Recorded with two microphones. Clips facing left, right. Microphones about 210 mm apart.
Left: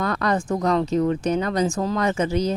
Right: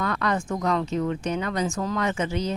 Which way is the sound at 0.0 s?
40° left (ahead or behind).